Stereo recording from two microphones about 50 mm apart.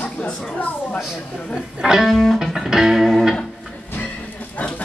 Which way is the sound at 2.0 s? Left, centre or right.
Centre.